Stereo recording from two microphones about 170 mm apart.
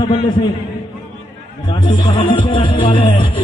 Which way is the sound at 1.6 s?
25° left (ahead or behind).